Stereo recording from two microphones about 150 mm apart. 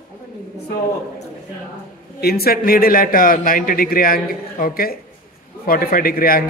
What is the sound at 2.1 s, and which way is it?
A man's voice, 90° left.